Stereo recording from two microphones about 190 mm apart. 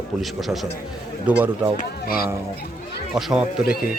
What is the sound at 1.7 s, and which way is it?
Speech, 50° left (ahead or behind).